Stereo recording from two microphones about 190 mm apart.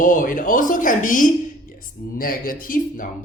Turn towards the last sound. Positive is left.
turn(degrees=45)  # may be behind; listen again after turning